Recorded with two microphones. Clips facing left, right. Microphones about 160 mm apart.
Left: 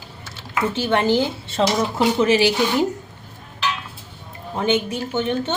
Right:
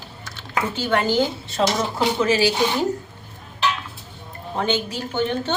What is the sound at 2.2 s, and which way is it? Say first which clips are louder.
Speech: left 1 dB; 25° left (ahead or behind).